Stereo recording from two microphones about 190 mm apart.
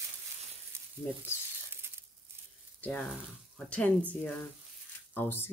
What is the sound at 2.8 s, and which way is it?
Speech, 5° left (ahead or behind).